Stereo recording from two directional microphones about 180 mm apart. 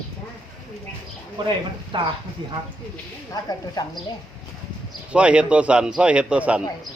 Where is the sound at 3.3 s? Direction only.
20° left (ahead or behind).